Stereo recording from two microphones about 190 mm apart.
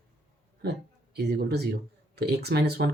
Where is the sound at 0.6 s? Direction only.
60° right (ahead or behind).